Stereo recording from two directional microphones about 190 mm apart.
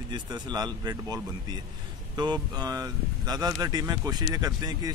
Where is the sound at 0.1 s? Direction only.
20° right (ahead or behind).